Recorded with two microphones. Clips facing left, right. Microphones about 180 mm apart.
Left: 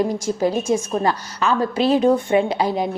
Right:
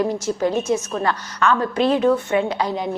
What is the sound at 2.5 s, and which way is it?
Speech, 10° left (ahead or behind).